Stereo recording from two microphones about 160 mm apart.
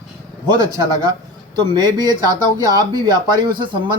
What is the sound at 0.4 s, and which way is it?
Speech, 25° right (ahead or behind).